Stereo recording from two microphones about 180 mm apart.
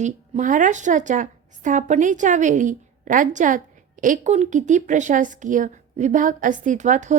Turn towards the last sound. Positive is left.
turn(degrees=-45)  # may be behind; listen again after turning